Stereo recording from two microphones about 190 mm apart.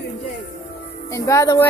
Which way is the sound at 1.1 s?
15° left (ahead or behind).